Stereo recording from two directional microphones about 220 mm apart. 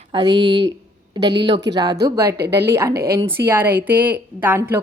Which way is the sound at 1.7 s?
20° right (ahead or behind).